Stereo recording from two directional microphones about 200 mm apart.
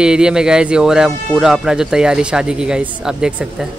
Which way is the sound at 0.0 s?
5° right (ahead or behind).